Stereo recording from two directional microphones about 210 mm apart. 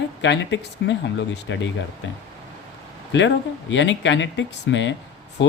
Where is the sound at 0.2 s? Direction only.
60° left (ahead or behind).